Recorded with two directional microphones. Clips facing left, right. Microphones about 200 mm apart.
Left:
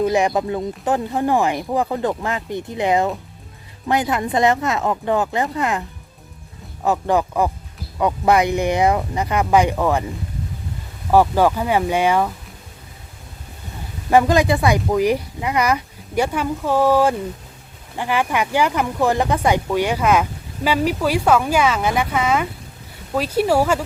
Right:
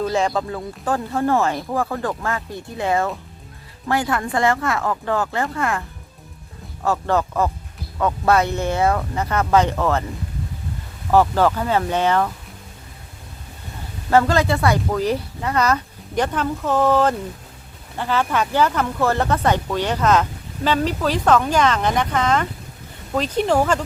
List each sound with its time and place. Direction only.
0.0 s speech: 15° left (ahead or behind)
6.8 s speech: 15° left (ahead or behind)
11.1 s speech: 10° left (ahead or behind)
14.1 s speech: 15° left (ahead or behind)